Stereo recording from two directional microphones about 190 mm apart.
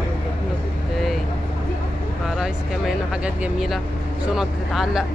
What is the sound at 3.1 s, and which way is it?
Speech, 5° right (ahead or behind).